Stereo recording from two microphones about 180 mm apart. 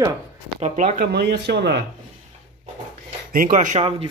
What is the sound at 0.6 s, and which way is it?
Speech, 45° right (ahead or behind).